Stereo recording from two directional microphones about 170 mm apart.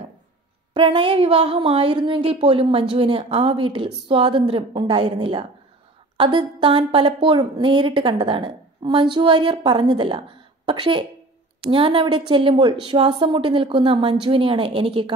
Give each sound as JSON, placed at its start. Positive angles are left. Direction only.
{"t": 0.7, "sound": "a woman's voice", "side_deg": -30}